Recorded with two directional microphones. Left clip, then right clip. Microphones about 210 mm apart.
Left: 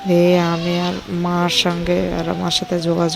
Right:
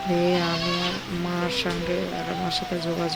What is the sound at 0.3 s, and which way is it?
Speech, 35° left (ahead or behind).